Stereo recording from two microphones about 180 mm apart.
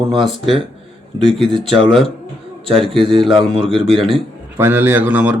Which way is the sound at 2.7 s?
Centre (ahead or behind).